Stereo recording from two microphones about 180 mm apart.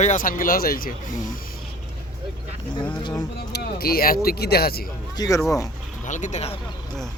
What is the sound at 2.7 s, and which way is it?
Speech, 25° left (ahead or behind).